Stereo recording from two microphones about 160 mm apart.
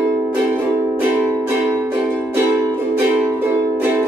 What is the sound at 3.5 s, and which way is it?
Music, 15° right (ahead or behind).